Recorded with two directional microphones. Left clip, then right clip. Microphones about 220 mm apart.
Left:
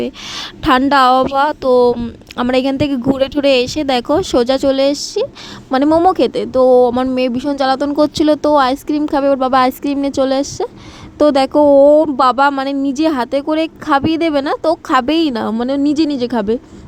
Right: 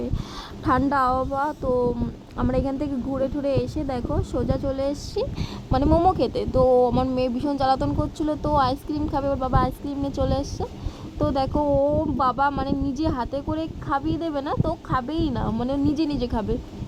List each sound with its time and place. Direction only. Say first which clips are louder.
0.0 s a woman's voice: left 11 dB; 40° left (ahead or behind)